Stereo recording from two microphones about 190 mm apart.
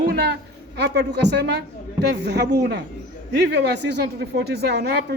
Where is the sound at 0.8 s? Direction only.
65° right (ahead or behind).